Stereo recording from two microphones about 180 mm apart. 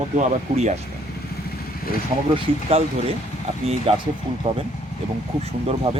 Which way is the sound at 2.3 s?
35° right (ahead or behind).